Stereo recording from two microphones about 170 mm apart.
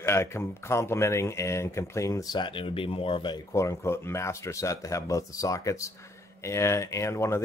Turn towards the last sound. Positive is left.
turn(degrees=15)  # may be behind; listen again after turning